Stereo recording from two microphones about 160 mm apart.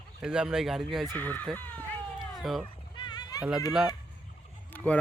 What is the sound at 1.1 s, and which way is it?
Speech, 10° left (ahead or behind).